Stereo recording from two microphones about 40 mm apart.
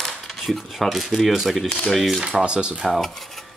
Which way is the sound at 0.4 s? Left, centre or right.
Centre.